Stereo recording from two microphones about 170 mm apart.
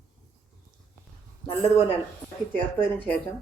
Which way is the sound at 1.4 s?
15° left (ahead or behind).